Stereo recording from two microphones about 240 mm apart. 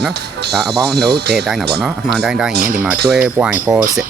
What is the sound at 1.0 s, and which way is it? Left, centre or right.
Speech, right.